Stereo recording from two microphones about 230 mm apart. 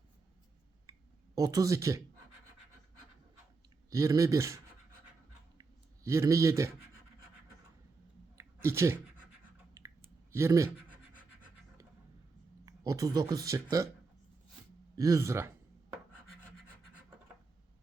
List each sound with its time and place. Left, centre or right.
0.9 s a sound: centre
1.4 s speech: centre
3.8 s speech: centre
5.5 s clicking: centre
8.4 s a sound: centre
9.8 s clicking: centre
10.3 s speech: centre
12.6 s speech: centre
14.9 s a sound: centre